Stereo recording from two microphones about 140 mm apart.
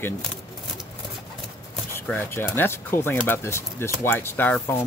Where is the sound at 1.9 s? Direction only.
15° left (ahead or behind).